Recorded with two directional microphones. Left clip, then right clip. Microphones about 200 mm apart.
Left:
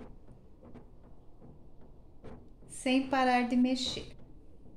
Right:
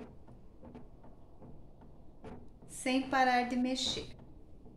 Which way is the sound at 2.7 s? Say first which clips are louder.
Left 3 dB; 25° left (ahead or behind).